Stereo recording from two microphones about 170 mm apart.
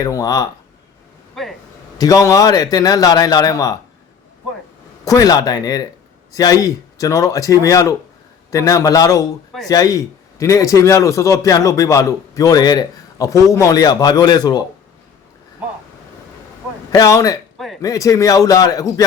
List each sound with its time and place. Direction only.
0.0 s a man's voice: 20° left (ahead or behind)
1.4 s a sound: centre (ahead or behind)
2.0 s a man's voice: 20° left (ahead or behind)
5.0 s a man's voice: 20° left (ahead or behind)
16.9 s a man's voice: 20° left (ahead or behind)